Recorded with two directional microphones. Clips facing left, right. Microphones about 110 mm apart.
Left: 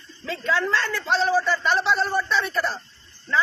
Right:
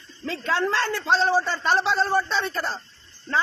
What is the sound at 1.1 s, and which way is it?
A man's voice, 35° right (ahead or behind).